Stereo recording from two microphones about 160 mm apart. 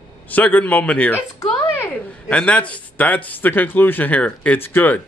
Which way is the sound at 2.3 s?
5° left (ahead or behind).